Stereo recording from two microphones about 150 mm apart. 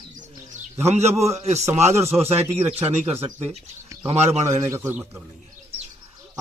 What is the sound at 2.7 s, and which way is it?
Speech, 15° right (ahead or behind).